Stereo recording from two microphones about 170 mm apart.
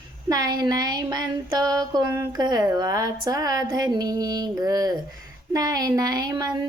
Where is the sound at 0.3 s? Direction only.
25° right (ahead or behind).